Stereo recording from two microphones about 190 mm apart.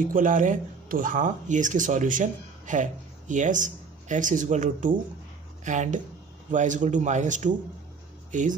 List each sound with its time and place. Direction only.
0.1 s speech: 45° right (ahead or behind)